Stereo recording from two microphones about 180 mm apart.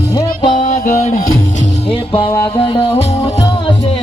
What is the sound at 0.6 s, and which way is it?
Music, 45° left (ahead or behind).